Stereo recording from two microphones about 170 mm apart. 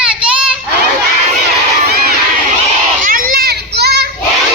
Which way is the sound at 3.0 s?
55° right (ahead or behind).